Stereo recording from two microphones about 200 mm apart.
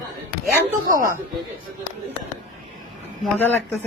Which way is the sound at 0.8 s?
40° right (ahead or behind).